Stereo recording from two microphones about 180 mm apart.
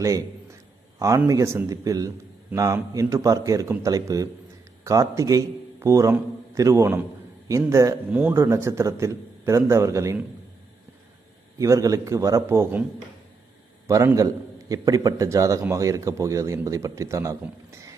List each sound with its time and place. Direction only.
0.9 s a man's voice: 15° right (ahead or behind)
11.5 s a man's voice: 15° right (ahead or behind)
13.8 s a man's voice: 20° right (ahead or behind)